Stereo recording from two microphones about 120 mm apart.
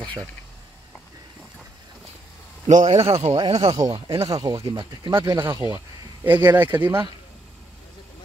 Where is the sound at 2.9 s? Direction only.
60° right (ahead or behind).